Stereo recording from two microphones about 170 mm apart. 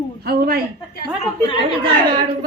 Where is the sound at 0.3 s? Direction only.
65° right (ahead or behind).